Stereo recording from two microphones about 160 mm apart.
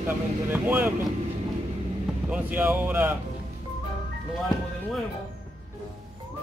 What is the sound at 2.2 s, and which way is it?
Speech, 10° right (ahead or behind).